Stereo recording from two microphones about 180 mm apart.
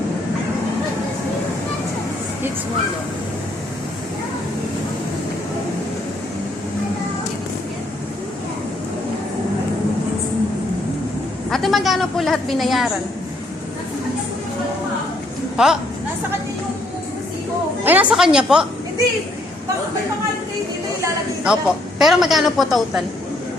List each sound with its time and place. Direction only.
11.5 s speech: centre (ahead or behind)
15.5 s speech: 5° right (ahead or behind)
17.8 s speech: 10° right (ahead or behind)
21.4 s speech: 5° right (ahead or behind)